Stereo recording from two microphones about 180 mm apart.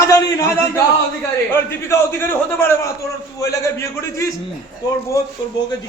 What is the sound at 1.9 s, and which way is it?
A man's voice, 15° left (ahead or behind).